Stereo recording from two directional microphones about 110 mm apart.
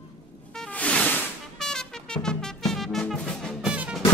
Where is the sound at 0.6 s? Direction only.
10° left (ahead or behind).